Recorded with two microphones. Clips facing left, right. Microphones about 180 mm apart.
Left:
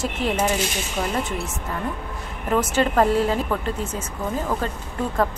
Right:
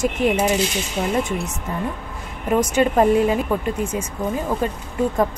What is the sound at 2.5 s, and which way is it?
Speech, 15° right (ahead or behind).